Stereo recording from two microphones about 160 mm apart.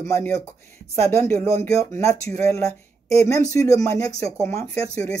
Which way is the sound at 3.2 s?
20° left (ahead or behind).